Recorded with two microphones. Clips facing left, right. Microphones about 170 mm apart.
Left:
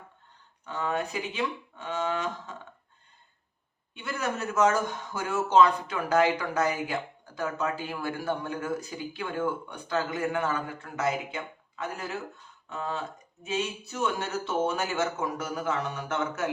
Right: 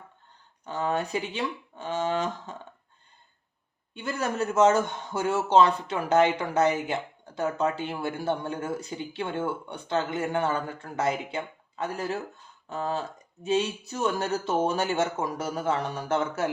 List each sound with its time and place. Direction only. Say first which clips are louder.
0.6 s speech: right 2 dB; 35° right (ahead or behind)
3.9 s a man's voice: right 3 dB; 35° right (ahead or behind)